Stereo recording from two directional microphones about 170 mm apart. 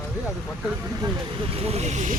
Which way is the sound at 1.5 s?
35° right (ahead or behind).